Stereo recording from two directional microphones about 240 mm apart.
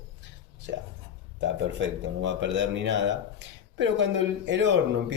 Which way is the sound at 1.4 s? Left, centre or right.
Right.